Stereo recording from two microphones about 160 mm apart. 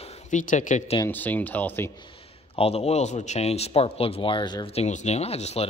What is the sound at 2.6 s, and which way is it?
A man's voice, 40° left (ahead or behind).